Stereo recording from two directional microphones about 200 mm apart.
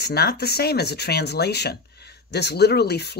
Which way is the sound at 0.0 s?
55° left (ahead or behind).